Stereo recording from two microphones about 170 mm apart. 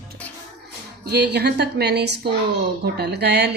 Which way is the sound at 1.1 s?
75° right (ahead or behind).